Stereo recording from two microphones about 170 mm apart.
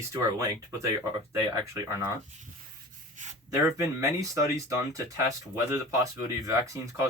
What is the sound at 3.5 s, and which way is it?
Speech, 20° right (ahead or behind).